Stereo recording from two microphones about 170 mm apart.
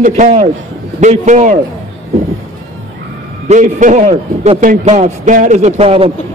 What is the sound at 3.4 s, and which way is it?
A man's voice, 45° right (ahead or behind).